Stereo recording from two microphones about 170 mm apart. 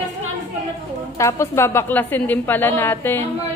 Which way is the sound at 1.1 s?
20° left (ahead or behind).